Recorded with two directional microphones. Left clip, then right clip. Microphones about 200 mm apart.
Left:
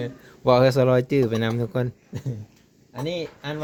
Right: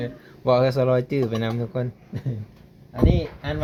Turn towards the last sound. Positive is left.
turn(degrees=45)  # may be behind; listen again after turning